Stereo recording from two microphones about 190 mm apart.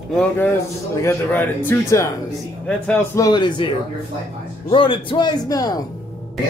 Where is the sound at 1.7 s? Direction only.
15° left (ahead or behind).